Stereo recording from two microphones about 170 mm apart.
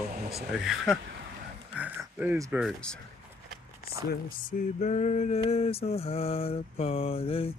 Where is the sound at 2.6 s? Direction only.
5° left (ahead or behind).